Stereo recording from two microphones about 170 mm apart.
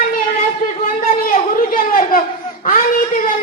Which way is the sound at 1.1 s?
55° left (ahead or behind).